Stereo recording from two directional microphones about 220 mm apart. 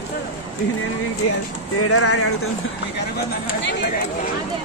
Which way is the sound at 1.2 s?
90° left.